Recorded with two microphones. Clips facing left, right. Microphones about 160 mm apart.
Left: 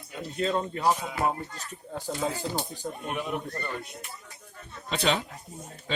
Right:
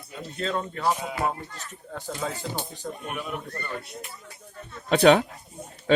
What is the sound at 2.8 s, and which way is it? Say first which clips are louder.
Music: even; 15° left (ahead or behind).